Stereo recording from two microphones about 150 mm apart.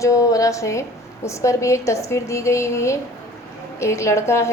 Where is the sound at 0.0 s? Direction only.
20° left (ahead or behind).